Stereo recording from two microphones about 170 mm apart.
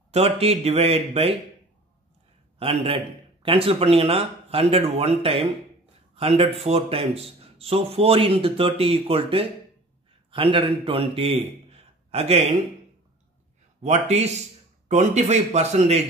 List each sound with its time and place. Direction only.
0.1 s speech: 35° right (ahead or behind)
2.6 s speech: 35° right (ahead or behind)
11.7 s a sound: 35° right (ahead or behind)
13.8 s speech: 40° right (ahead or behind)